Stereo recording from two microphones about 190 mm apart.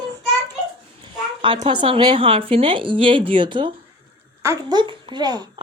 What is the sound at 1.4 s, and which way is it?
A child's voice, 25° right (ahead or behind).